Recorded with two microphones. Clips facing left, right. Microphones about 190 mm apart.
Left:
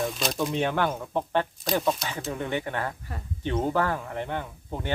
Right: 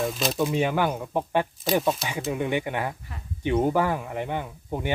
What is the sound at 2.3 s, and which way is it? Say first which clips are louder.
Speech: right 3 dB; 15° right (ahead or behind).